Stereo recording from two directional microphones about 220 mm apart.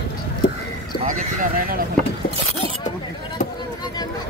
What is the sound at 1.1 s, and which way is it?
Speech, 40° right (ahead or behind).